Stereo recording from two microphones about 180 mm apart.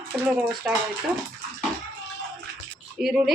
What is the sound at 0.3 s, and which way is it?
Speech, 5° right (ahead or behind).